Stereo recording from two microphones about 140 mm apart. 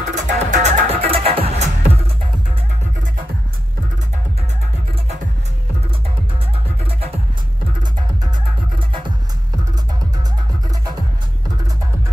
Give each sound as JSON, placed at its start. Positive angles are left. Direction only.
{"t": 0.1, "sound": "music", "side_deg": -55}
{"t": 8.7, "sound": "music", "side_deg": -35}